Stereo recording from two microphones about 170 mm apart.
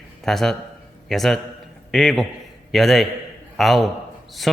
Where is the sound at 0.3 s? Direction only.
Centre (ahead or behind).